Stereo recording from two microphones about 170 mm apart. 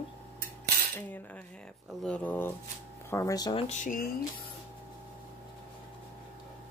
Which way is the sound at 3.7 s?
50° left (ahead or behind).